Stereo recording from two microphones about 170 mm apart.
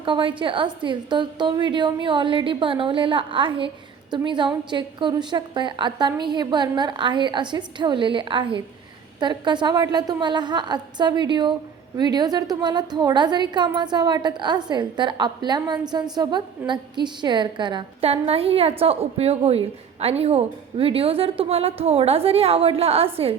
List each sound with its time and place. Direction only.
0.0 s a woman's voice: 30° right (ahead or behind)